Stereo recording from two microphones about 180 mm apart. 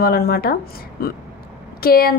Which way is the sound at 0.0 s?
60° left (ahead or behind).